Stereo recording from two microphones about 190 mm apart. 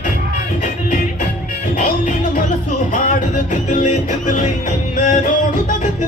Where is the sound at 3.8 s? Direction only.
40° left (ahead or behind).